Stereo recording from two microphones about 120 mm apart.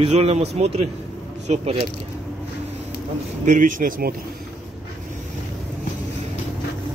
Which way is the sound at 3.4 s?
90° right.